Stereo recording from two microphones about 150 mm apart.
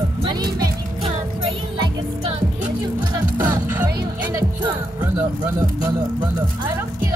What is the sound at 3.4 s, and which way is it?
Music, 25° right (ahead or behind).